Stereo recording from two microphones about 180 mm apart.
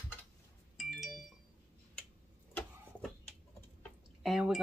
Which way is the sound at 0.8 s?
Centre (ahead or behind).